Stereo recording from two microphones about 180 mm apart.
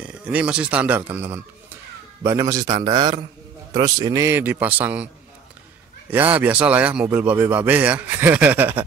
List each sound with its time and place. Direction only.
0.0 s a man's voice: 5° right (ahead or behind)